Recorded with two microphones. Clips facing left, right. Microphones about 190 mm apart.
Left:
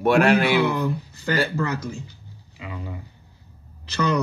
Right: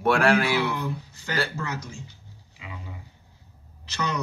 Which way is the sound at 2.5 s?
60° left (ahead or behind).